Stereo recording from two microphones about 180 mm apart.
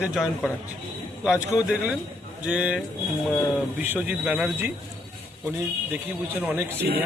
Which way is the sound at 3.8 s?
10° right (ahead or behind).